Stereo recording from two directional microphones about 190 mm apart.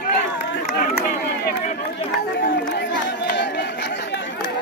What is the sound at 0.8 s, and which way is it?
Run, 50° left (ahead or behind).